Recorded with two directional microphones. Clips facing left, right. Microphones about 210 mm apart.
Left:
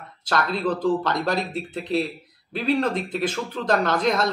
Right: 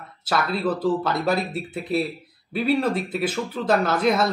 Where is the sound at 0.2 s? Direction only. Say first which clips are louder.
Even; 5° right (ahead or behind).